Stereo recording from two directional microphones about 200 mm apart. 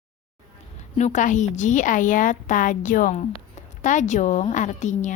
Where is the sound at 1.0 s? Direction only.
35° left (ahead or behind).